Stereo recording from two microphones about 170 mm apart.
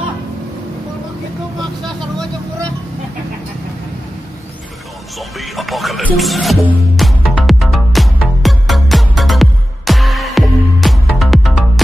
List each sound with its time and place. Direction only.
5.4 s music: centre (ahead or behind)